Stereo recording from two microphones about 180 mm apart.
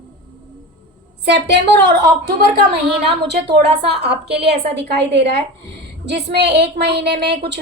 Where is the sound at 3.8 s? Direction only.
65° right (ahead or behind).